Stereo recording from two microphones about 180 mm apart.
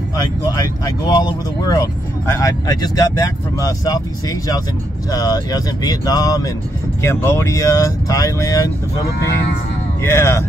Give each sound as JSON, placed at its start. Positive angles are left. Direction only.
{"t": 0.5, "sound": "speech", "side_deg": 20}
{"t": 10.0, "sound": "speech", "side_deg": 15}